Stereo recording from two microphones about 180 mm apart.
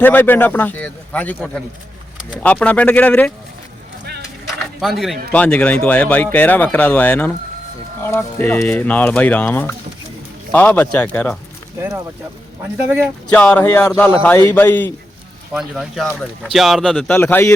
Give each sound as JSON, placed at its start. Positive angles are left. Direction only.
{"t": 0.0, "sound": "speech", "side_deg": 10}
{"t": 2.4, "sound": "speech", "side_deg": 10}
{"t": 4.8, "sound": "speech", "side_deg": 0}
{"t": 11.8, "sound": "a man's voice", "side_deg": -15}
{"t": 13.3, "sound": "speech", "side_deg": 5}
{"t": 15.5, "sound": "speech", "side_deg": 0}